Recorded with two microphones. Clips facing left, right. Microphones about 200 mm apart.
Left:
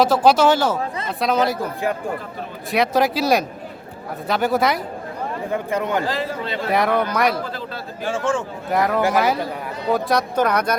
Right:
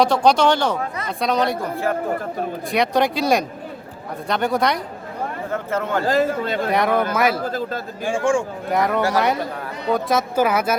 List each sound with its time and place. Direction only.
0.0 s speech: 5° left (ahead or behind)
2.7 s speech: centre (ahead or behind)
5.5 s speech: 15° left (ahead or behind)
6.1 s a man's voice: 45° right (ahead or behind)
6.7 s speech: centre (ahead or behind)
7.4 s a man's voice: 45° right (ahead or behind)
8.0 s a man's voice: 10° right (ahead or behind)
8.7 s speech: centre (ahead or behind)